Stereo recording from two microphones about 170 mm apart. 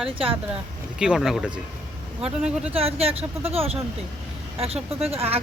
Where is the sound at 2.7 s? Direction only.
35° right (ahead or behind).